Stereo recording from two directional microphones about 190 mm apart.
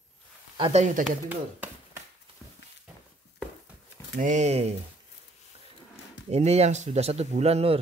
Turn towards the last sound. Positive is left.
turn(degrees=-35)  # may be behind; listen again after turning